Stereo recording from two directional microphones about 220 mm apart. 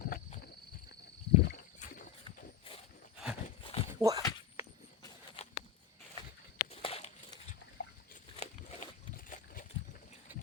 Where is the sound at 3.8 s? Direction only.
15° right (ahead or behind).